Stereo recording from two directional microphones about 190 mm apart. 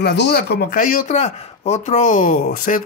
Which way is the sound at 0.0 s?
60° left (ahead or behind).